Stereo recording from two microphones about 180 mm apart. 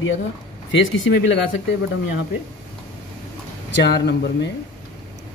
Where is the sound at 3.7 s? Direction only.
70° left (ahead or behind).